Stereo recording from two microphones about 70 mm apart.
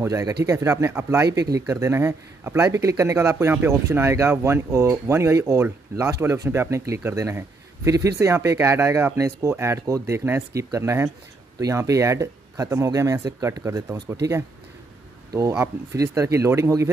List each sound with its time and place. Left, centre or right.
0.0 s speech: right
1.2 s speech: right
9.8 s speech: right
15.6 s speech: right